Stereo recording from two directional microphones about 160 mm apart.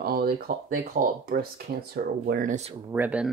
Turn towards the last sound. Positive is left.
turn(degrees=-10)  # may be behind; listen again after turning